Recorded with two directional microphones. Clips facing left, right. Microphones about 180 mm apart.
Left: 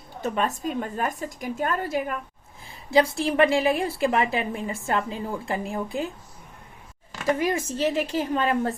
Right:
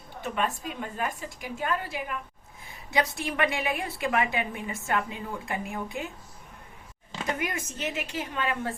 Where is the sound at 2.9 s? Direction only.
30° left (ahead or behind).